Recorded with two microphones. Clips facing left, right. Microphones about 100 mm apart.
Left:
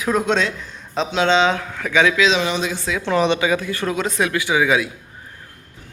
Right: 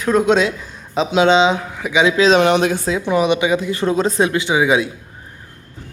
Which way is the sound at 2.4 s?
60° right (ahead or behind).